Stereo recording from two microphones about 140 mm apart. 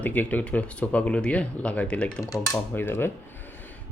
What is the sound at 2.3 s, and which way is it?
Speech, 20° left (ahead or behind).